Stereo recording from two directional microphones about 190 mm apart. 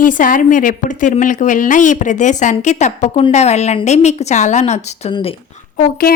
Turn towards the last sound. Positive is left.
turn(degrees=50)  # may be behind; listen again after turning